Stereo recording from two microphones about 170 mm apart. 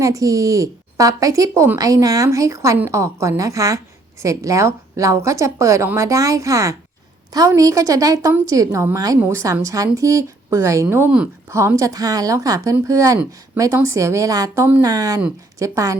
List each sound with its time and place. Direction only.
0.0 s a woman's voice: 20° right (ahead or behind)